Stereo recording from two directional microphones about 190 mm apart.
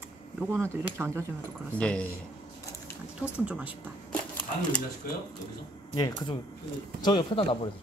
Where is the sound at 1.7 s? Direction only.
5° left (ahead or behind).